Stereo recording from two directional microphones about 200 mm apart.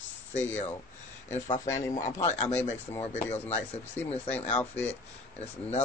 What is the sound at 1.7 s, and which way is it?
Speech, 15° left (ahead or behind).